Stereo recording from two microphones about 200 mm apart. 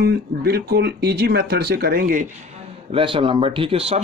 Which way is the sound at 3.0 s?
25° right (ahead or behind).